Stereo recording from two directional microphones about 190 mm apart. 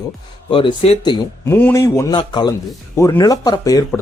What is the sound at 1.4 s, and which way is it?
Speech, 10° left (ahead or behind).